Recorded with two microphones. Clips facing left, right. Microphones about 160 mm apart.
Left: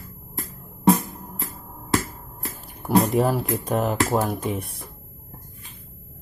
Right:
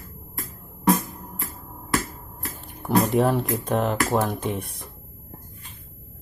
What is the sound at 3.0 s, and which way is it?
Speech, 5° left (ahead or behind).